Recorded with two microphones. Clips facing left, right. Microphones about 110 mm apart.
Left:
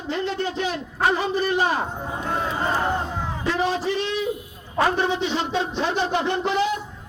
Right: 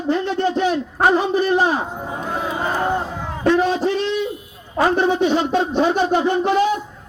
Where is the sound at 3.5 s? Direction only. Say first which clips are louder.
Right 7 dB; 55° right (ahead or behind).